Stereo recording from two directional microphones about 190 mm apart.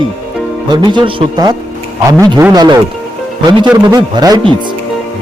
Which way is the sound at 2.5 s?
20° right (ahead or behind).